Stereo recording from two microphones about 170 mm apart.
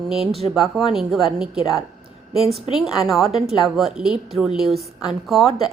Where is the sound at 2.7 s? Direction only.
Centre (ahead or behind).